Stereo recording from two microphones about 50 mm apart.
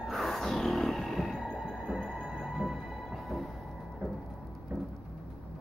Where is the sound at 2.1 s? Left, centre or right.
Centre.